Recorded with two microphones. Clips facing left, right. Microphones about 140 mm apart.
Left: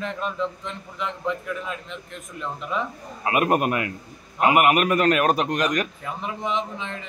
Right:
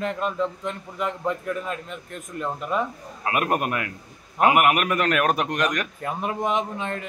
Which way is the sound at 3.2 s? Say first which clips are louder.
Left 3 dB; 5° left (ahead or behind).